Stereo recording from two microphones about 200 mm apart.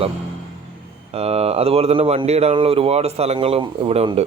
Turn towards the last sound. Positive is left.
turn(degrees=-30)  # may be behind; listen again after turning